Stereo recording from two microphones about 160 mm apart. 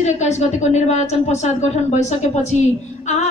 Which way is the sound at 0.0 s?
45° left (ahead or behind).